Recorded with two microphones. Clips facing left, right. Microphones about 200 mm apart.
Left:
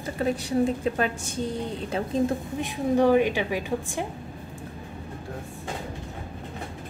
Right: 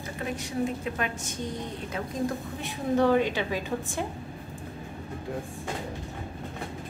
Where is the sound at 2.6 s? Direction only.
15° left (ahead or behind).